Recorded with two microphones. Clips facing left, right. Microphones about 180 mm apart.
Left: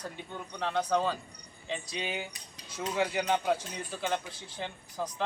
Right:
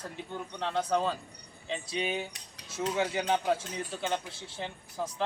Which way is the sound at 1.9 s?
30° right (ahead or behind).